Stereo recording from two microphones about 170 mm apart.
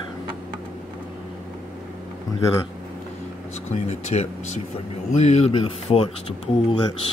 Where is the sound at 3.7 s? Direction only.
40° left (ahead or behind).